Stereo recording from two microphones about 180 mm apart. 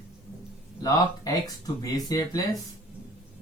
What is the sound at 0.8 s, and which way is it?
Speech, 20° left (ahead or behind).